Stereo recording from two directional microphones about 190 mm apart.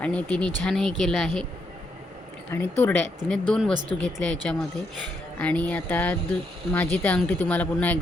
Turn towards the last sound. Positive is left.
turn(degrees=10)  # may be behind; listen again after turning